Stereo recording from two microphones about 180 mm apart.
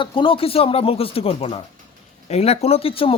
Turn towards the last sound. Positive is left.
turn(degrees=30)  # may be behind; listen again after turning